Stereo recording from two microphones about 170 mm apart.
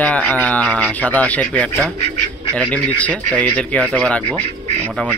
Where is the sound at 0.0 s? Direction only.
10° left (ahead or behind).